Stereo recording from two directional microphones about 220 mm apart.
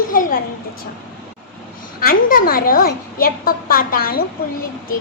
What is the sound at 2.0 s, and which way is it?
A child's voice, 40° left (ahead or behind).